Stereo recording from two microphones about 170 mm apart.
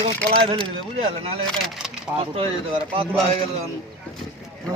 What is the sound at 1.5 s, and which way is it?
Speech, centre (ahead or behind).